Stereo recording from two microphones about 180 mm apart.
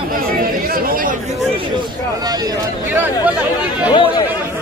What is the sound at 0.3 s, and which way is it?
Chatter, 50° right (ahead or behind).